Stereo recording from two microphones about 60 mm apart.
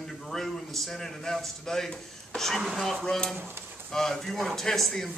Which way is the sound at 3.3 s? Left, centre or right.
Right.